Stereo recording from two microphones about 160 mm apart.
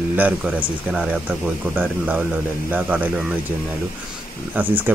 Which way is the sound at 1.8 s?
10° right (ahead or behind).